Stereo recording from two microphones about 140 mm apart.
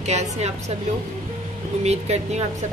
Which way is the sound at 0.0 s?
55° right (ahead or behind).